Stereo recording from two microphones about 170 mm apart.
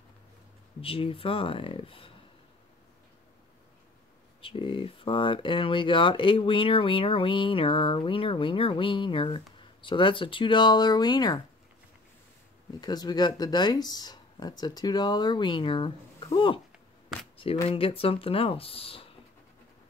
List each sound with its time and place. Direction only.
0.7 s speech: 35° left (ahead or behind)
4.4 s speech: 30° left (ahead or behind)
12.8 s speech: 25° left (ahead or behind)
17.6 s speech: 35° left (ahead or behind)